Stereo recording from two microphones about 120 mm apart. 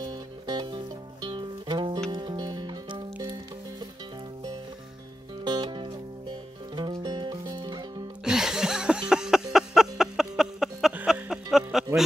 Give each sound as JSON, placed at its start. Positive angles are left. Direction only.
{"t": 0.0, "sound": "music", "side_deg": -35}
{"t": 5.4, "sound": "music", "side_deg": -40}
{"t": 8.2, "sound": "a sound", "side_deg": -5}
{"t": 11.5, "sound": "music", "side_deg": -5}